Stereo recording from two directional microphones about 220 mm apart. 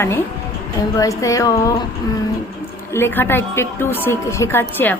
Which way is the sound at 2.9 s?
10° left (ahead or behind).